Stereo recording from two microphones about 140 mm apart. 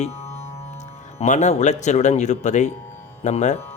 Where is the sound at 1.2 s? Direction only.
55° left (ahead or behind).